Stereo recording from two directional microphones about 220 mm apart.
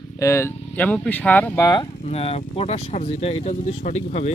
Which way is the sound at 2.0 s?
25° left (ahead or behind).